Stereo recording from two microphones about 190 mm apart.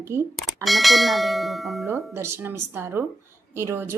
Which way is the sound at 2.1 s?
10° right (ahead or behind).